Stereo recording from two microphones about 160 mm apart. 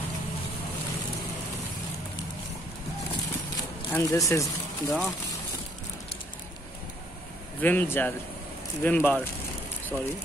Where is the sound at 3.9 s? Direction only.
15° left (ahead or behind).